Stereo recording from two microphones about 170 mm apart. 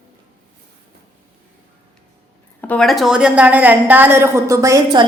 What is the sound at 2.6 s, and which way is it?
A woman's voice, 5° left (ahead or behind).